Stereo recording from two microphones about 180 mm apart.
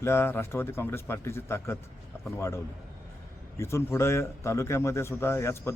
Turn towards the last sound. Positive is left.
turn(degrees=15)  # may be behind; listen again after turning